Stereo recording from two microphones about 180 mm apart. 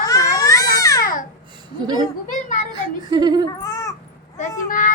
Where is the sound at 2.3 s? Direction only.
45° left (ahead or behind).